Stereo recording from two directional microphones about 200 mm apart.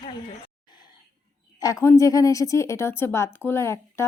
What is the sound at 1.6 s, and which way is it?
A woman's voice, 15° left (ahead or behind).